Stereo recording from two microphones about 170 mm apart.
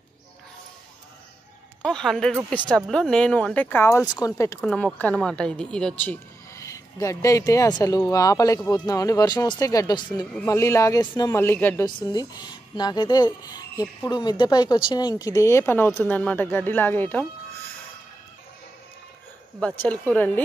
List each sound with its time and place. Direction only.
1.8 s speech: 5° left (ahead or behind); by 4.3 s 20° left (ahead or behind)
4.6 s speech: centre (ahead or behind)
11.8 s speech: 25° left (ahead or behind)
19.8 s speech: 10° left (ahead or behind)